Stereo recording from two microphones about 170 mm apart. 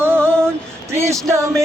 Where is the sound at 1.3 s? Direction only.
15° right (ahead or behind).